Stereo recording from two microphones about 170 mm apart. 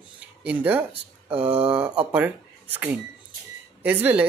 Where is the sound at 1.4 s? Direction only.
35° right (ahead or behind).